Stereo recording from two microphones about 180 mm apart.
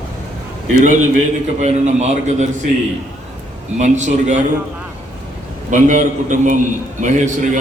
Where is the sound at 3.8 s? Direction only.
40° right (ahead or behind).